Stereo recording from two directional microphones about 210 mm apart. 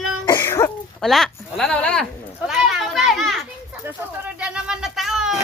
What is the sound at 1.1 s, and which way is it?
Speech, centre (ahead or behind).